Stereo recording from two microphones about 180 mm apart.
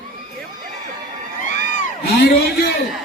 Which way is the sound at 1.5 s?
45° left (ahead or behind).